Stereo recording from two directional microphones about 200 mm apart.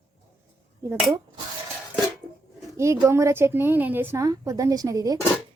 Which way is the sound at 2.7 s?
15° right (ahead or behind).